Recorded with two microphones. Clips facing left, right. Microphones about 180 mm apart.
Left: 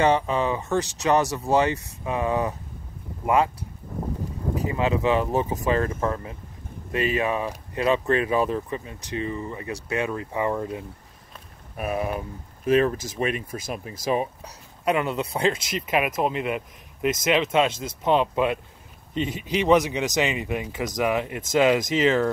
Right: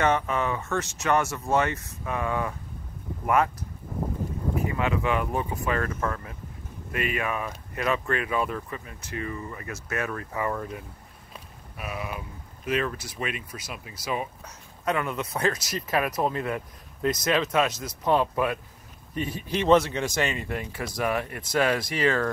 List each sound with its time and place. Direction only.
0.0 s speech: 30° left (ahead or behind)
2.0 s speech: 20° left (ahead or behind)
4.6 s speech: 30° left (ahead or behind)
11.7 s speech: 40° left (ahead or behind)
13.5 s speech: 50° left (ahead or behind)
14.1 s speech: 35° left (ahead or behind)
14.9 s speech: 20° left (ahead or behind)